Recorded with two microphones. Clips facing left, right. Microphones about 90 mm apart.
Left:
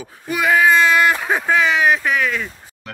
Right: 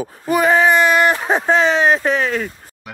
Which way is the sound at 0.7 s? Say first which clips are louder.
Right 1 dB; 20° right (ahead or behind).